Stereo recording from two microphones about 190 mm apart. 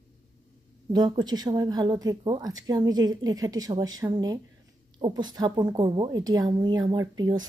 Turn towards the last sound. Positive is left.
turn(degrees=-20)  # may be behind; listen again after turning